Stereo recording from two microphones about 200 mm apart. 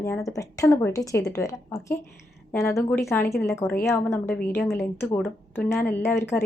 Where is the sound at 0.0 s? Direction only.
15° left (ahead or behind).